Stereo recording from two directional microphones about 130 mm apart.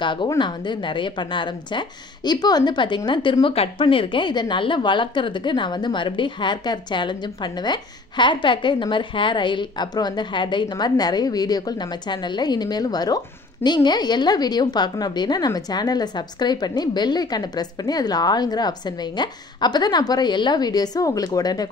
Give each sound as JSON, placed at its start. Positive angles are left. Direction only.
{"t": 0.0, "sound": "a woman's voice", "side_deg": 40}